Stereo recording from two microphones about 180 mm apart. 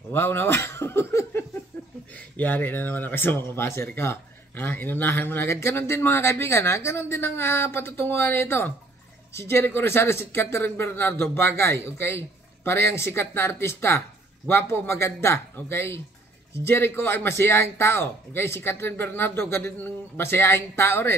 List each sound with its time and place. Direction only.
0.1 s speech: 10° left (ahead or behind)